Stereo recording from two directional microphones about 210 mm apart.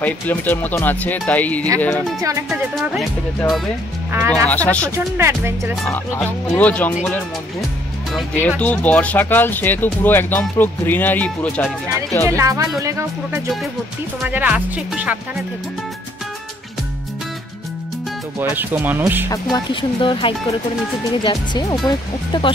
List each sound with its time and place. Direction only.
0.0 s speech: 10° left (ahead or behind)
2.2 s speech: 15° right (ahead or behind)
2.7 s speech: centre (ahead or behind)
4.9 s speech: 10° right (ahead or behind)
5.9 s speech: 10° left (ahead or behind)
8.1 s speech: 5° left (ahead or behind)
12.3 s speech: 15° right (ahead or behind)
18.4 s speech: 10° right (ahead or behind)
19.5 s speech: 25° left (ahead or behind)